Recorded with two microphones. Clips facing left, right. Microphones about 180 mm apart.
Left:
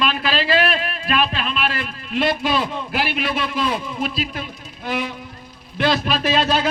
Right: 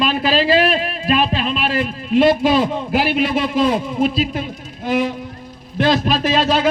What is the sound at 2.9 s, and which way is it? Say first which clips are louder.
A man's voice: right 6 dB; 40° right (ahead or behind).